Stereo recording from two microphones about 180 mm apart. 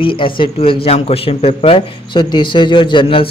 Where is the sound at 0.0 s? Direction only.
30° left (ahead or behind).